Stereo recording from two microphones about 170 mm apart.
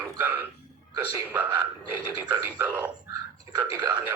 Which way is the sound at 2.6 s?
10° right (ahead or behind).